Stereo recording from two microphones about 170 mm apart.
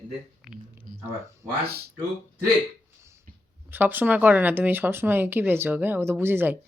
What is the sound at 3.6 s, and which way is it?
Speech, 10° right (ahead or behind).